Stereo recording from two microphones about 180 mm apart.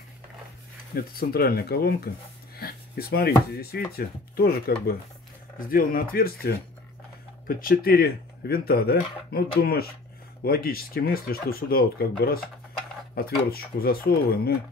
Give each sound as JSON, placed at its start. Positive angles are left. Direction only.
{"t": 0.9, "sound": "speech", "side_deg": 55}
{"t": 13.5, "sound": "speech", "side_deg": 55}